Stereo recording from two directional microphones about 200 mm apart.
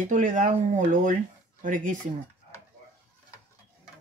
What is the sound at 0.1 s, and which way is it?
Speech, 40° right (ahead or behind).